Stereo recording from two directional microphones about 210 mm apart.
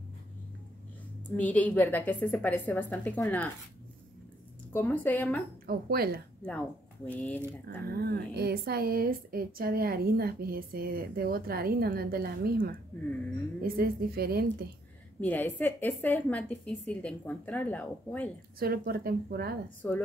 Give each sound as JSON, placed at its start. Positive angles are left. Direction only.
{"t": 1.3, "sound": "a woman's voice", "side_deg": 5}
{"t": 4.7, "sound": "a woman's voice", "side_deg": 10}
{"t": 5.7, "sound": "speech", "side_deg": -45}
{"t": 7.1, "sound": "a woman's voice", "side_deg": 5}
{"t": 7.6, "sound": "speech", "side_deg": -50}
{"t": 15.1, "sound": "a woman's voice", "side_deg": 10}
{"t": 18.6, "sound": "speech", "side_deg": -45}
{"t": 19.8, "sound": "a woman's voice", "side_deg": 10}